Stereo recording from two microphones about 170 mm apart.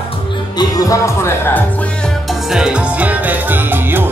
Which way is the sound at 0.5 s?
20° left (ahead or behind).